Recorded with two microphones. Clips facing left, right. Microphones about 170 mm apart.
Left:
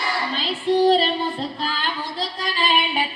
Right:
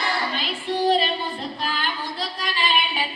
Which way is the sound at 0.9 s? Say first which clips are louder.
Left 1 dB; 35° left (ahead or behind).